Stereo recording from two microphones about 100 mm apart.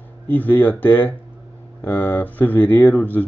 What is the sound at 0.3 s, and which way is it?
Speech, 20° left (ahead or behind).